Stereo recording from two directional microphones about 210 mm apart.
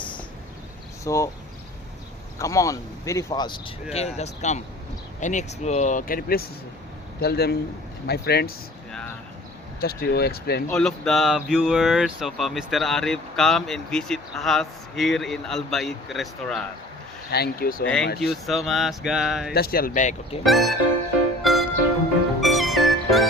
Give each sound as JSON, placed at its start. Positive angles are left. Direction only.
{"t": 1.0, "sound": "speech", "side_deg": 15}
{"t": 2.4, "sound": "speech", "side_deg": 15}
{"t": 3.9, "sound": "speech", "side_deg": 30}
{"t": 8.9, "sound": "a sound", "side_deg": 5}
{"t": 9.8, "sound": "speech", "side_deg": 50}
{"t": 10.7, "sound": "speech", "side_deg": 5}
{"t": 17.3, "sound": "speech", "side_deg": 45}
{"t": 17.8, "sound": "speech", "side_deg": 5}
{"t": 19.5, "sound": "speech", "side_deg": 45}
{"t": 20.4, "sound": "speech", "side_deg": 0}
{"t": 21.4, "sound": "music", "side_deg": 0}